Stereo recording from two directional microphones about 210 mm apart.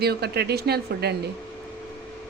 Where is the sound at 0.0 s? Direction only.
50° right (ahead or behind).